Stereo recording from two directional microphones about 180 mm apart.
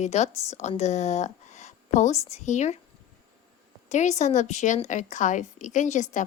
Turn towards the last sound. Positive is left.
turn(degrees=40)  # may be behind; listen again after turning